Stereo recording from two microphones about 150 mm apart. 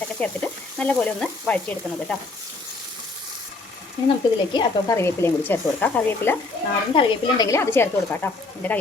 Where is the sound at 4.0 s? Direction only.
30° left (ahead or behind).